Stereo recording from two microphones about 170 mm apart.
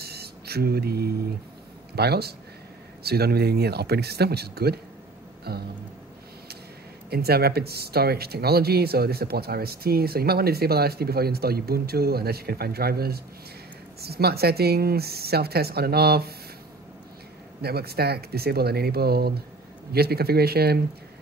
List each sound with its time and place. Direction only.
0.0 s a sound: 70° right (ahead or behind)
2.0 s speech: 70° right (ahead or behind)
7.1 s speech: 70° right (ahead or behind)
17.6 s speech: 65° right (ahead or behind)